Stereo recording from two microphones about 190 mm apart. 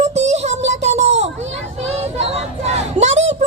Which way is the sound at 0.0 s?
35° right (ahead or behind).